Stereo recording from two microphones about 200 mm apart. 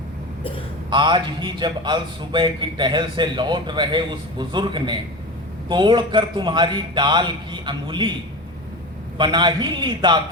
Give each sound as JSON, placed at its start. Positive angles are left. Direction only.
{"t": 0.9, "sound": "a man's voice", "side_deg": -25}
{"t": 9.1, "sound": "a man's voice", "side_deg": -20}